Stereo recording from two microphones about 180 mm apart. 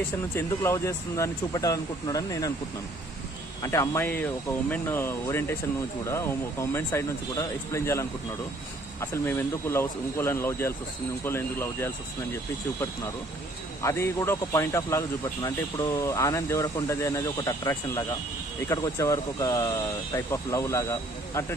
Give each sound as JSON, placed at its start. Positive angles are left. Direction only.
{"t": 0.4, "sound": "speech", "side_deg": 15}
{"t": 3.6, "sound": "speech", "side_deg": 15}
{"t": 13.8, "sound": "speech", "side_deg": 15}